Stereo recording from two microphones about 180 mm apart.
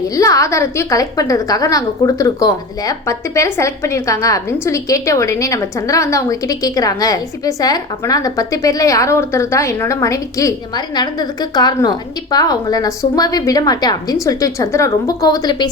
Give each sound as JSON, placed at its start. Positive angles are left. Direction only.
{"t": 0.2, "sound": "a woman's voice", "side_deg": 15}